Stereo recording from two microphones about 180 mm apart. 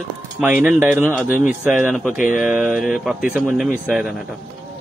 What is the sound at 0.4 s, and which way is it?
Speech, 10° right (ahead or behind).